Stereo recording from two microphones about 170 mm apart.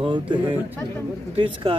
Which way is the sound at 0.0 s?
30° right (ahead or behind).